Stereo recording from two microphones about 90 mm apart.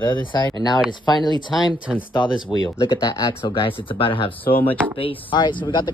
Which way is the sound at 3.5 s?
70° left (ahead or behind).